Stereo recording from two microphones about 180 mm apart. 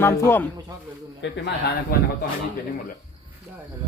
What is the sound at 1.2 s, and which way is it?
Speech, 90° left.